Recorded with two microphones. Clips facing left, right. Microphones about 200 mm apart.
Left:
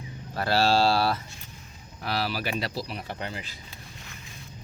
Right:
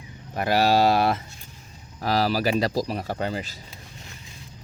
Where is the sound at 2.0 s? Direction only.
40° right (ahead or behind).